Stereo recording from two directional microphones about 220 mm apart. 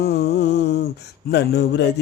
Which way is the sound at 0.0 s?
45° left (ahead or behind).